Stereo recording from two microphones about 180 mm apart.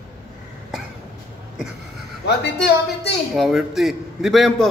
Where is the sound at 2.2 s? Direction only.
65° left (ahead or behind).